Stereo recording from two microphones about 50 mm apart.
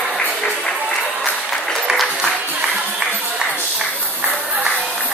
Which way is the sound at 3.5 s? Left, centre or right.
Right.